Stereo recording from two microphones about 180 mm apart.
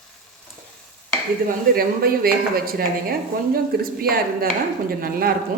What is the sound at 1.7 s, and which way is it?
A woman's voice, 55° right (ahead or behind).